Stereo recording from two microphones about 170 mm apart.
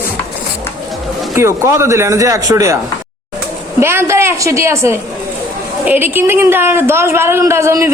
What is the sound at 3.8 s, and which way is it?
A woman's voice, 15° right (ahead or behind).